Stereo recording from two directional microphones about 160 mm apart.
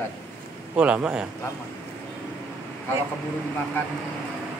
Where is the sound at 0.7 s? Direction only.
10° right (ahead or behind).